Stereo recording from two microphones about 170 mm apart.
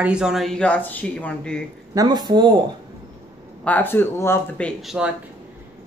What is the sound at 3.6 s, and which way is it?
Speech, 10° left (ahead or behind).